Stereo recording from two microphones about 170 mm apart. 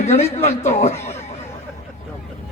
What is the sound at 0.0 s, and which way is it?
A man's voice, 40° left (ahead or behind).